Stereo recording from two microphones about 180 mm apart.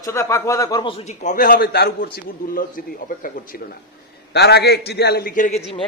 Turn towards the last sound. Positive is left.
turn(degrees=45)  # may be behind; listen again after turning